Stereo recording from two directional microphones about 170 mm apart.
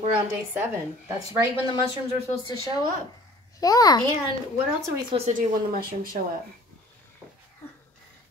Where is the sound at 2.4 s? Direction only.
25° left (ahead or behind).